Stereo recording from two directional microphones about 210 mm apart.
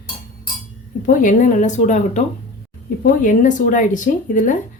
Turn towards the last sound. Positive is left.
turn(degrees=35)  # may be behind; listen again after turning